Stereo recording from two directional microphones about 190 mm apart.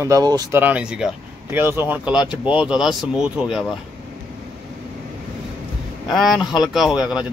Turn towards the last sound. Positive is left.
turn(degrees=-5)  # may be behind; listen again after turning